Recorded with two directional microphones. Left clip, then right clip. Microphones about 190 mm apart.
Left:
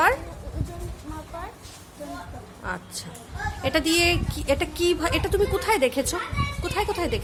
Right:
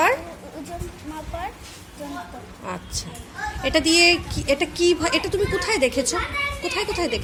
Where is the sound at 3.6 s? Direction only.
10° left (ahead or behind).